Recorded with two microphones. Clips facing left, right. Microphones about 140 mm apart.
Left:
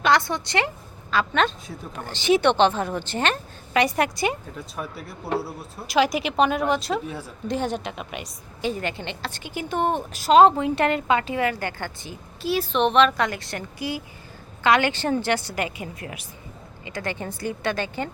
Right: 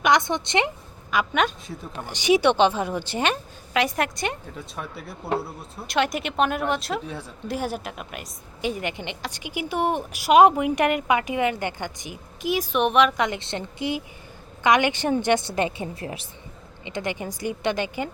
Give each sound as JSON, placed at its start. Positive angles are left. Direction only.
{"t": 0.0, "sound": "a woman's voice", "side_deg": -20}
{"t": 3.8, "sound": "a woman's voice", "side_deg": 0}
{"t": 8.6, "sound": "a woman's voice", "side_deg": -15}